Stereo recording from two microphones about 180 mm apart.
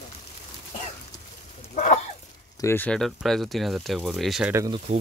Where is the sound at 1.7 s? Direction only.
40° left (ahead or behind).